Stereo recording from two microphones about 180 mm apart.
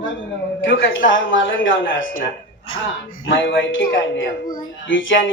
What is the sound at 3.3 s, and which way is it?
Speech, 85° left.